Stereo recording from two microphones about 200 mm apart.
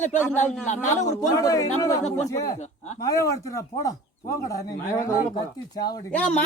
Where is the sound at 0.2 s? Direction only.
10° left (ahead or behind).